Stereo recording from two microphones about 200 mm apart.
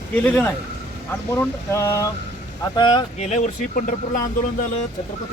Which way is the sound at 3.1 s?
40° left (ahead or behind).